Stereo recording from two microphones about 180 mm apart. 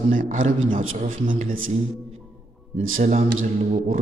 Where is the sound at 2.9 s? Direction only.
45° right (ahead or behind).